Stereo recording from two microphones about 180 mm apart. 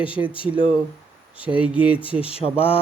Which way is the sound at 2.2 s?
30° left (ahead or behind).